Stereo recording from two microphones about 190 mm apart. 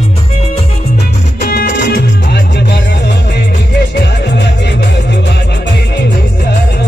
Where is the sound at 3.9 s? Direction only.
60° left (ahead or behind).